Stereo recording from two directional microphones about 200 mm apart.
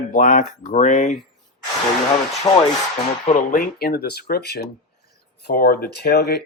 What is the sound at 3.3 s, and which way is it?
Speech, 45° left (ahead or behind).